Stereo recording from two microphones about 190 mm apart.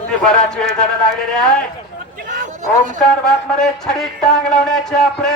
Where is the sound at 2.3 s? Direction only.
45° right (ahead or behind).